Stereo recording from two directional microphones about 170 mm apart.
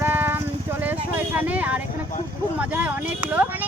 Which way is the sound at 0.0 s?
10° right (ahead or behind).